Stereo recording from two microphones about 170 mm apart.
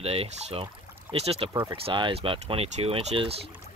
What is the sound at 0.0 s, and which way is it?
Speech, 35° right (ahead or behind).